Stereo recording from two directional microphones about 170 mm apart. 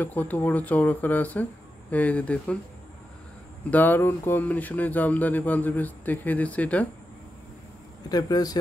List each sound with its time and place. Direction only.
0.0 s speech: 10° left (ahead or behind)
3.7 s speech: 10° left (ahead or behind)
8.1 s speech: 20° left (ahead or behind)